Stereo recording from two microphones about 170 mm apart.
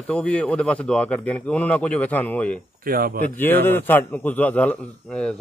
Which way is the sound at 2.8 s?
60° right (ahead or behind).